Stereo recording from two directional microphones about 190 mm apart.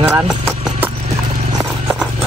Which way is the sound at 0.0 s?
10° right (ahead or behind).